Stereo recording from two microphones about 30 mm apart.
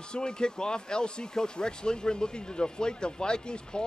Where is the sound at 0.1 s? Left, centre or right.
Left.